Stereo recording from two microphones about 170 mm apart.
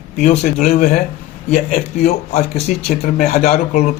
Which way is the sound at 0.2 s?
45° left (ahead or behind).